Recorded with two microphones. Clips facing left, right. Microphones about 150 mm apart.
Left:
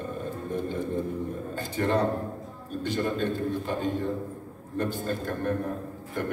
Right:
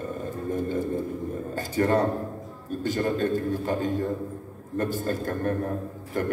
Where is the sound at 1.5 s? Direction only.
45° right (ahead or behind).